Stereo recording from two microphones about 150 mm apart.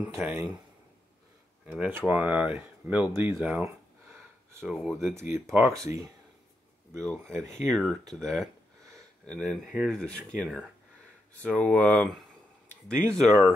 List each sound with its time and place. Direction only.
0.2 s speech: 15° right (ahead or behind)
1.7 s speech: 10° right (ahead or behind)
4.6 s speech: 5° right (ahead or behind)
5.0 s speech: 15° right (ahead or behind)
7.0 s speech: 5° left (ahead or behind)